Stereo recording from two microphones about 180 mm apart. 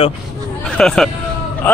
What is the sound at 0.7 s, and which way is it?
Speech, 5° left (ahead or behind).